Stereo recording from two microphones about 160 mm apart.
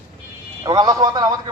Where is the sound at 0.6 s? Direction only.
25° right (ahead or behind).